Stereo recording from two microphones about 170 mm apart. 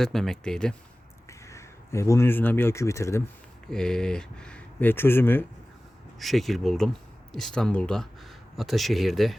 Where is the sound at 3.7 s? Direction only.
5° left (ahead or behind).